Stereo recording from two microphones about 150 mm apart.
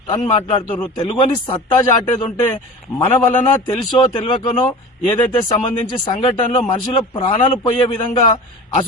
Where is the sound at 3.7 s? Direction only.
30° left (ahead or behind).